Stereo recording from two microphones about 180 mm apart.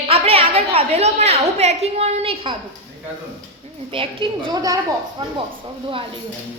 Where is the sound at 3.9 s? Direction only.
30° right (ahead or behind).